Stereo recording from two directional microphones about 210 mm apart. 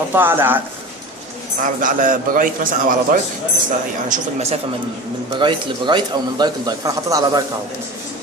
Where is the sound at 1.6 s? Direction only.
40° right (ahead or behind).